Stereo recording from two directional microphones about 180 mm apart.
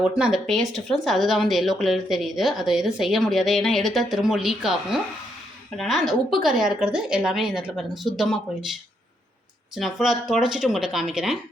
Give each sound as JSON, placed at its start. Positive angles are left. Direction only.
{"t": 0.0, "sound": "speech", "side_deg": -5}
{"t": 9.7, "sound": "speech", "side_deg": 0}